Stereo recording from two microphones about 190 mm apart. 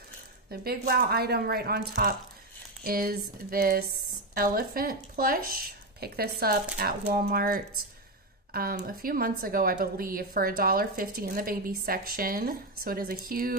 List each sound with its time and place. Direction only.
0.5 s a woman's voice: 55° right (ahead or behind)